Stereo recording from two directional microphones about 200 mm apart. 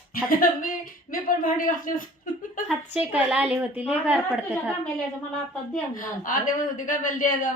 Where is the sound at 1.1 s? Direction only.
45° left (ahead or behind).